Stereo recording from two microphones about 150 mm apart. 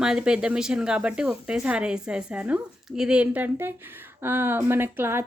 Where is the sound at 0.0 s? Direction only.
5° right (ahead or behind).